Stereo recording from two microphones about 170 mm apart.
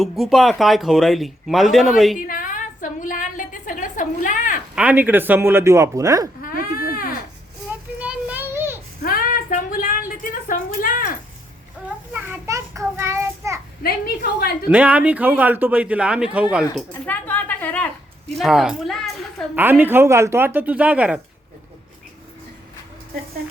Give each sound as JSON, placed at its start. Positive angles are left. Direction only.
{"t": 0.0, "sound": "speech", "side_deg": 0}
{"t": 2.1, "sound": "a sound", "side_deg": 55}
{"t": 4.7, "sound": "speech", "side_deg": -10}
{"t": 6.4, "sound": "baby cry", "side_deg": 55}
{"t": 7.9, "sound": "children playing", "side_deg": -10}
{"t": 9.0, "sound": "a sound", "side_deg": 60}
{"t": 11.9, "sound": "child singing", "side_deg": -10}
{"t": 13.8, "sound": "a sound", "side_deg": 65}
{"t": 14.7, "sound": "speech", "side_deg": -10}
{"t": 17.1, "sound": "a sound", "side_deg": 10}
{"t": 18.3, "sound": "a woman's voice", "side_deg": 0}
{"t": 19.5, "sound": "speech", "side_deg": -10}